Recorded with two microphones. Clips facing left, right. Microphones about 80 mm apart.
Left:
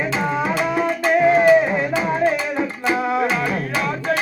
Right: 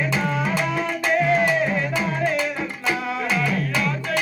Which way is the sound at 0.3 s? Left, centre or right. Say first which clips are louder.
Left 3 dB; left.